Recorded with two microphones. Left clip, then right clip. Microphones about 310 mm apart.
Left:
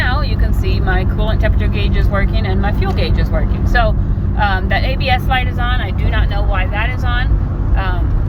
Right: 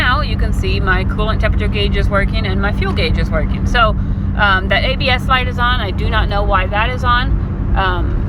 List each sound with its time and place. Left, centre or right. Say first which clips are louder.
0.0 s vehicle: right 4 dB; centre
0.9 s speech: right 3 dB; centre